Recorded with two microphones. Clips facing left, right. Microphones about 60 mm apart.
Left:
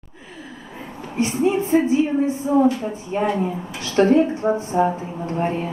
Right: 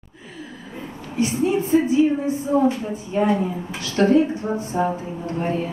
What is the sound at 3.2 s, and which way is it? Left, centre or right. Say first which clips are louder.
A woman's voice: right 2 dB; centre.